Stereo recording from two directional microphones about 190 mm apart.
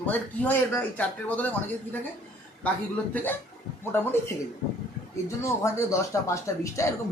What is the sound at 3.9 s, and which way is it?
Speech, 10° left (ahead or behind).